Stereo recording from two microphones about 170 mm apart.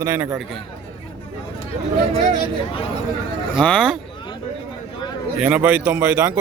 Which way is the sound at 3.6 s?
5° left (ahead or behind).